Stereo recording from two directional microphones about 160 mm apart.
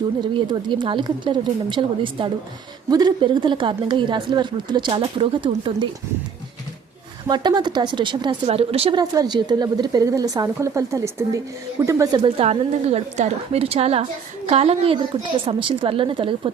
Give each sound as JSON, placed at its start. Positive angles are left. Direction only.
{"t": 0.3, "sound": "a woman's voice", "side_deg": -30}
{"t": 7.3, "sound": "a woman's voice", "side_deg": -25}
{"t": 9.0, "sound": "a woman's voice", "side_deg": -25}
{"t": 12.2, "sound": "a woman's voice", "side_deg": -40}